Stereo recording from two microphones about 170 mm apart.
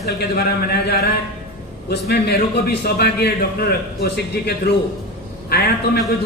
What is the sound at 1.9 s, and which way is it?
A man's voice, 75° left (ahead or behind).